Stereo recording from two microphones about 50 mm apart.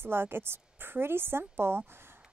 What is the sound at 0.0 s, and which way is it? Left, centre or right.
A woman's voice, right.